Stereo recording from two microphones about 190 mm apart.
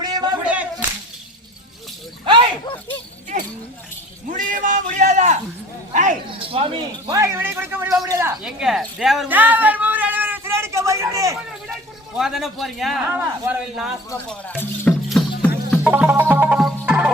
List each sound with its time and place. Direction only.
0.0 s a sound: 20° right (ahead or behind)
0.4 s whip: 5° right (ahead or behind)
3.3 s a sound: 40° right (ahead or behind)
5.9 s a man's voice: 40° right (ahead or behind); by 11.3 s 15° right (ahead or behind)
11.7 s a man's voice: centre (ahead or behind)
14.3 s speech: 10° left (ahead or behind)
15.1 s music: 5° left (ahead or behind)
15.8 s music: 10° right (ahead or behind)